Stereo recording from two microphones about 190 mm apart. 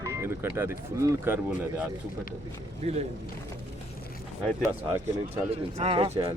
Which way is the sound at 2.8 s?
35° right (ahead or behind).